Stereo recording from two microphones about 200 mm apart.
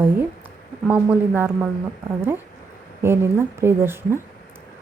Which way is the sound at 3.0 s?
10° right (ahead or behind).